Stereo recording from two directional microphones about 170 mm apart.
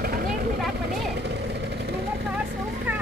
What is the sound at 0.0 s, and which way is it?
Vehicle, 60° right (ahead or behind).